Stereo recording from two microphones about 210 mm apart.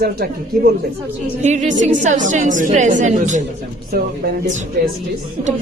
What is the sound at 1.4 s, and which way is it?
A woman's voice, 35° right (ahead or behind).